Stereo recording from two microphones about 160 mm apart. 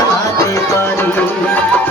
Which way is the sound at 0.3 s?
20° left (ahead or behind).